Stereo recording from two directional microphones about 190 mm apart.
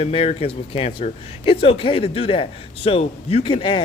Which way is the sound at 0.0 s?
30° left (ahead or behind).